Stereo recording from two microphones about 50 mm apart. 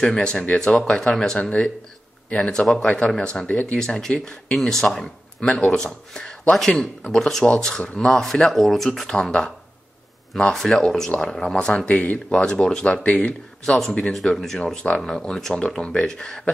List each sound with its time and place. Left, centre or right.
0.0 s speech: centre
1.4 s speech: left
3.4 s speech: left
3.7 s speech: centre
4.6 s speech: centre
5.5 s speech: left
5.8 s speech: centre
8.0 s speech: centre; by 12.2 s left
12.4 s speech: centre
12.8 s speech: left
13.2 s speech: centre
14.6 s speech: centre